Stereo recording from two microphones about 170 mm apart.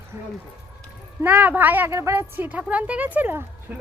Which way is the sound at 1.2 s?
10° right (ahead or behind).